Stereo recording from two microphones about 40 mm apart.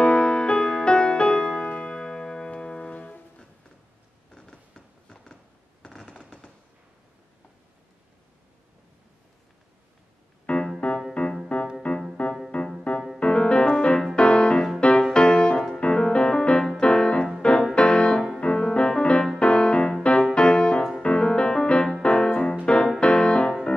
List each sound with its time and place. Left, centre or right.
0.0 s music: left
4.3 s a sound: centre
6.1 s fireworks: left
10.4 s keyboard: left
11.2 s music: left